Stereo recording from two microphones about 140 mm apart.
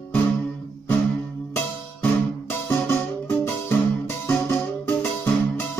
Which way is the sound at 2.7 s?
15° left (ahead or behind).